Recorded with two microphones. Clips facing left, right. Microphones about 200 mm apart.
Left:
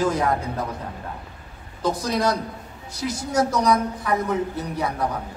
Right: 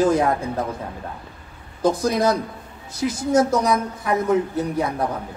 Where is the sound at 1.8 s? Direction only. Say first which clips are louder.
Right 4 dB; 50° right (ahead or behind).